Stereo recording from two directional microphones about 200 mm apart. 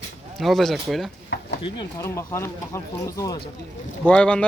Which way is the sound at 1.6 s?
20° left (ahead or behind).